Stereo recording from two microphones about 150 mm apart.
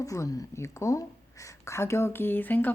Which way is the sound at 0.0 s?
20° left (ahead or behind).